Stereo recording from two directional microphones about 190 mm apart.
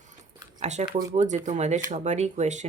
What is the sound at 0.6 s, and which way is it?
Speech, 35° right (ahead or behind).